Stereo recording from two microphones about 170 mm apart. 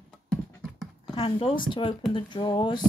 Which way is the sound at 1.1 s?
30° left (ahead or behind).